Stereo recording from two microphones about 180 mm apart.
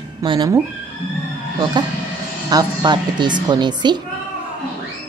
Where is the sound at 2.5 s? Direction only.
25° right (ahead or behind).